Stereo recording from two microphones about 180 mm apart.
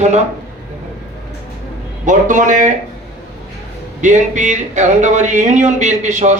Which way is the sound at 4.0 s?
40° right (ahead or behind).